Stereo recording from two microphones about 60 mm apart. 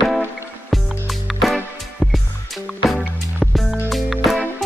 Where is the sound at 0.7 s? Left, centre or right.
Centre.